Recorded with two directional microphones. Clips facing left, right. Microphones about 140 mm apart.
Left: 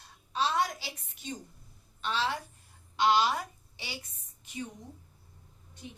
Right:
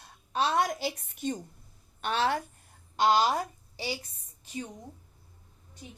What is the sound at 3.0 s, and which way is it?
A woman's voice, 40° right (ahead or behind).